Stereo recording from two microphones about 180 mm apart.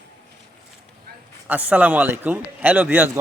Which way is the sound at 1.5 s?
10° right (ahead or behind).